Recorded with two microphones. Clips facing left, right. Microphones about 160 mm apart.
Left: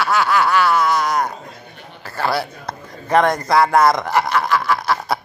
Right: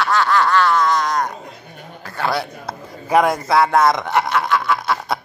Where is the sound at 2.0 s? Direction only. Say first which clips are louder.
Left 1 dB; 5° left (ahead or behind).